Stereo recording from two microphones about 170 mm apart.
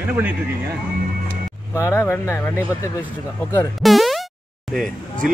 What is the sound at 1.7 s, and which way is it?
Speech, 15° left (ahead or behind).